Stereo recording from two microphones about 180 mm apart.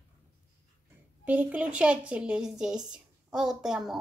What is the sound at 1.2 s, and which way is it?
A woman's voice, 10° right (ahead or behind).